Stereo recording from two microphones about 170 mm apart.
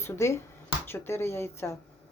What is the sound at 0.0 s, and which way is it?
Speech, 15° left (ahead or behind).